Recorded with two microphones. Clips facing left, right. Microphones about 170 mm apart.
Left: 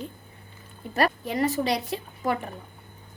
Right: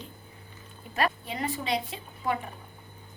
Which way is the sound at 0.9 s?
40° left (ahead or behind).